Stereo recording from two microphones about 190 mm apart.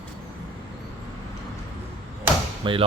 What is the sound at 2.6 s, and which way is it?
Speech, 25° right (ahead or behind).